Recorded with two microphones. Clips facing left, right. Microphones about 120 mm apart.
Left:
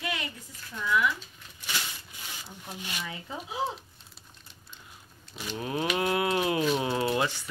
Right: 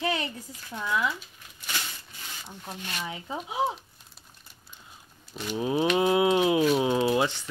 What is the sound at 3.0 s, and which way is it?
Speech, 20° right (ahead or behind).